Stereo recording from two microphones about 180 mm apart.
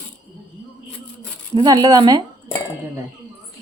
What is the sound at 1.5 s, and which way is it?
Speech, 20° right (ahead or behind).